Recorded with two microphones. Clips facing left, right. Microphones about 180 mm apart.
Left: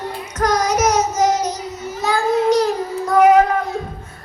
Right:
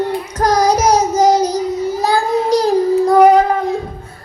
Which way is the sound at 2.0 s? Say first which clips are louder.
Left 1 dB; 35° right (ahead or behind).